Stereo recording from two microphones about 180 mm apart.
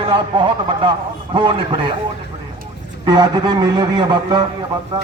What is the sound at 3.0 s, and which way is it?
Speech, 20° right (ahead or behind).